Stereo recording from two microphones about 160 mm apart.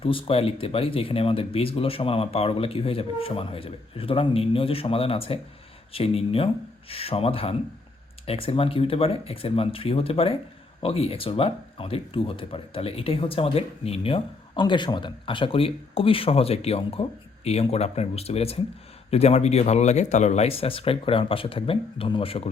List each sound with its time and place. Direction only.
0.0 s speech: 35° left (ahead or behind)